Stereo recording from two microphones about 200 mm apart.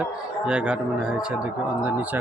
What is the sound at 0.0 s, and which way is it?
A man's voice, 5° right (ahead or behind).